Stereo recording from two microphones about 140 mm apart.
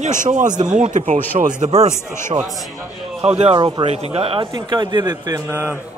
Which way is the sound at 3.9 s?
45° right (ahead or behind).